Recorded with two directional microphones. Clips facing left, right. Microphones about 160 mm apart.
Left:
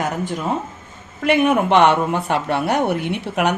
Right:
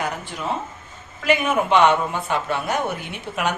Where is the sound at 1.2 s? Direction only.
60° left (ahead or behind).